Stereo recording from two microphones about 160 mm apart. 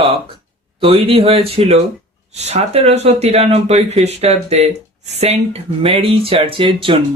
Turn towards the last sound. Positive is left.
turn(degrees=-35)  # may be behind; listen again after turning